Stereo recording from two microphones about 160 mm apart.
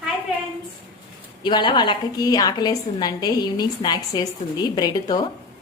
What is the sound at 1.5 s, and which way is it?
A woman's voice, 30° left (ahead or behind).